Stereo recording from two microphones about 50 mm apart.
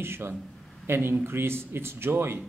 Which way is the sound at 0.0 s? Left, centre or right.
Right.